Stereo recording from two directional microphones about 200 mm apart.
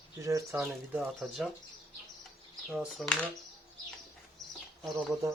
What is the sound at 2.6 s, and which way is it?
Speech, centre (ahead or behind).